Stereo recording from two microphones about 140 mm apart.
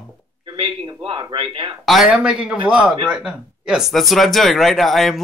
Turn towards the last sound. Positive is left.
turn(degrees=0)  # may be behind; listen again after turning